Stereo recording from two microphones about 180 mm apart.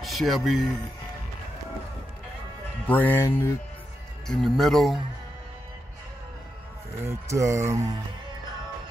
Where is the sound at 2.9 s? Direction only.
10° left (ahead or behind).